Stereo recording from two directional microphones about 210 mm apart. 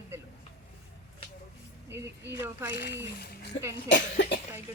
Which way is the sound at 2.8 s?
50° left (ahead or behind).